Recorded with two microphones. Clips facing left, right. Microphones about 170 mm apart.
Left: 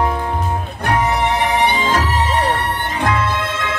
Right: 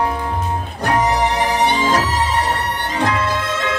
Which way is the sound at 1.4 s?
55° left (ahead or behind).